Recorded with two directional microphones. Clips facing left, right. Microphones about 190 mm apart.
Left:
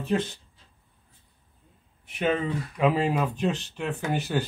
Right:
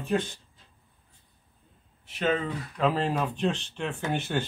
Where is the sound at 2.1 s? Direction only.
10° left (ahead or behind).